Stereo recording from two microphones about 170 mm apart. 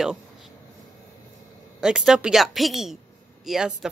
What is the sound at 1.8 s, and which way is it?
Speech, 5° right (ahead or behind).